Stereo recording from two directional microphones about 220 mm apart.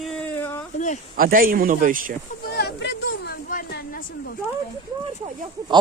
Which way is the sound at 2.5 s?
50° left (ahead or behind).